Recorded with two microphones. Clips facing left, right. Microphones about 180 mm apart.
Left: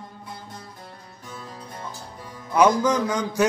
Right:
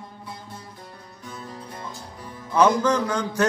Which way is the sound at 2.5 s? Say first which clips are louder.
Even; 10° left (ahead or behind).